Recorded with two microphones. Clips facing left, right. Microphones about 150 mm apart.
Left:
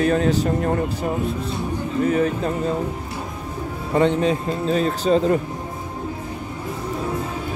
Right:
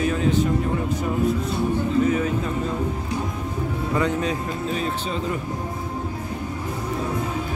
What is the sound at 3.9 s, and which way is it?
Speech, 25° left (ahead or behind).